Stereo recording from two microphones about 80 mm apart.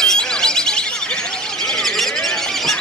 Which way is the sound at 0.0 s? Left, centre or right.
Centre.